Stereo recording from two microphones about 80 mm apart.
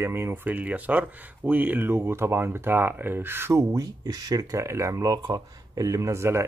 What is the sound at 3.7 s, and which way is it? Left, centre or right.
Speech, right.